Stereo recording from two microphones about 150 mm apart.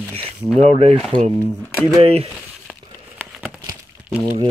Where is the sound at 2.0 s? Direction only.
40° right (ahead or behind).